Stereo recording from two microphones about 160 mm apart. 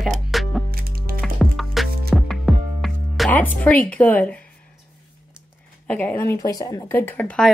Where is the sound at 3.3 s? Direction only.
10° left (ahead or behind).